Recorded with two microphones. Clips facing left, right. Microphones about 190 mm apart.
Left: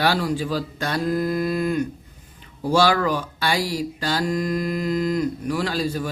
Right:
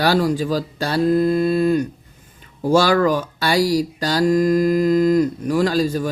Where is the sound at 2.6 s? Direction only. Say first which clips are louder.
Right 4 dB; 45° right (ahead or behind).